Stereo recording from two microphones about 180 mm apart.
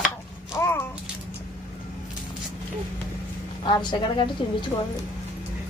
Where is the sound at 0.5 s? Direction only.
15° left (ahead or behind).